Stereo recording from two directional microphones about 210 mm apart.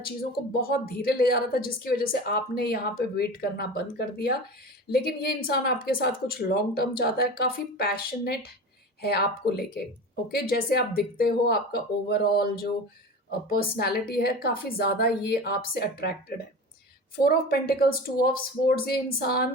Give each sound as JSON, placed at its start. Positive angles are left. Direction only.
{"t": 0.0, "sound": "speech", "side_deg": 45}
{"t": 13.5, "sound": "speech", "side_deg": 50}
{"t": 17.2, "sound": "speech", "side_deg": 45}